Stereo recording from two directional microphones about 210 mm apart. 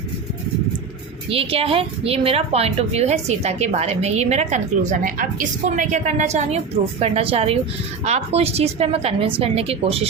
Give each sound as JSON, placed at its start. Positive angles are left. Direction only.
{"t": 1.3, "sound": "a woman's voice", "side_deg": -25}